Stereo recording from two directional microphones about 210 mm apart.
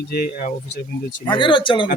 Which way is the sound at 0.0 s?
45° left (ahead or behind).